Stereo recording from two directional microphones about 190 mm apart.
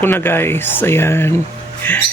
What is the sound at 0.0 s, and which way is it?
Speech, 10° left (ahead or behind).